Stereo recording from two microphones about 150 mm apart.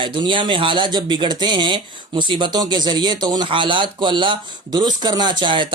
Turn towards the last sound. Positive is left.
turn(degrees=-30)  # may be behind; listen again after turning